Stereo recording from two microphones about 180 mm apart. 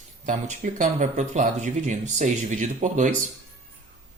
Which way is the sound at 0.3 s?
45° right (ahead or behind).